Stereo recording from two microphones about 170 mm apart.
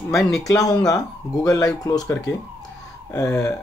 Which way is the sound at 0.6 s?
20° left (ahead or behind).